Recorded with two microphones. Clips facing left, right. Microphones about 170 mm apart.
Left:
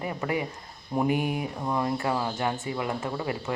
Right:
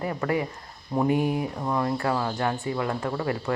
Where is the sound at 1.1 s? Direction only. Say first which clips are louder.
Right 5 dB; 30° right (ahead or behind).